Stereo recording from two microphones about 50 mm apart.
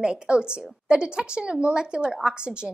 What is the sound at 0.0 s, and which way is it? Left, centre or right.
A woman's voice, centre.